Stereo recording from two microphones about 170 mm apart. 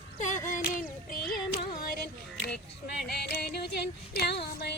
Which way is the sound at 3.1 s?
70° left (ahead or behind).